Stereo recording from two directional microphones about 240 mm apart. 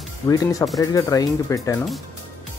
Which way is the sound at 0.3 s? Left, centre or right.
Centre.